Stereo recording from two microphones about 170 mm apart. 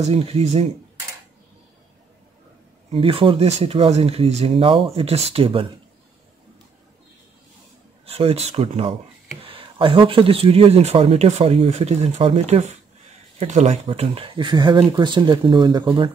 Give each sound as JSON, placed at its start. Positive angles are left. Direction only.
{"t": 0.0, "sound": "speech", "side_deg": -35}
{"t": 2.9, "sound": "speech", "side_deg": -30}
{"t": 8.0, "sound": "speech", "side_deg": -35}